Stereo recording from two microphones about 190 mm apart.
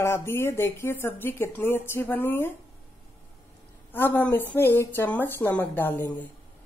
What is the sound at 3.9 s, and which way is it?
A woman's voice, 10° left (ahead or behind).